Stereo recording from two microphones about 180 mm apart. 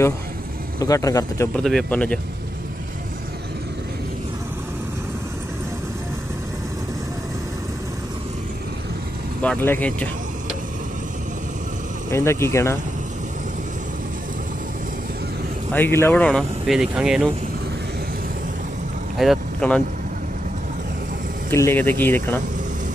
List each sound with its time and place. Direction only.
0.7 s speech: 20° left (ahead or behind)
1.6 s speech: 5° left (ahead or behind)
9.4 s speech: 10° left (ahead or behind)
12.1 s speech: 15° left (ahead or behind)
15.7 s speech: 15° left (ahead or behind); by 17.3 s 5° right (ahead or behind)
19.1 s speech: centre (ahead or behind)
21.5 s speech: 15° left (ahead or behind)